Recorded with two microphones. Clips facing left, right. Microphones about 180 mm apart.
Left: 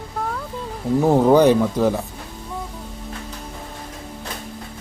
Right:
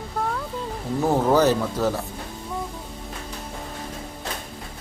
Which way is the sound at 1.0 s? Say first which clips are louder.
Left 5 dB; 15° left (ahead or behind).